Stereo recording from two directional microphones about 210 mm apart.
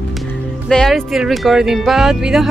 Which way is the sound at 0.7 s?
Centre (ahead or behind).